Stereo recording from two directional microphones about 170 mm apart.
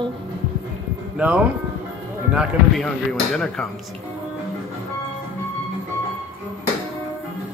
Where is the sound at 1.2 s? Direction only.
5° right (ahead or behind).